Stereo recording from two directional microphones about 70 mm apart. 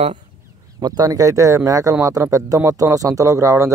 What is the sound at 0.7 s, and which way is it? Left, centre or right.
Speech, right.